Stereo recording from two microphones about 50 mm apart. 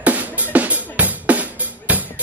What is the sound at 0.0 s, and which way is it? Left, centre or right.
Drum, right.